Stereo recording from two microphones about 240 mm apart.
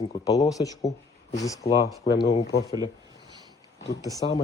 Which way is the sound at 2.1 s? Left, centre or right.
Left.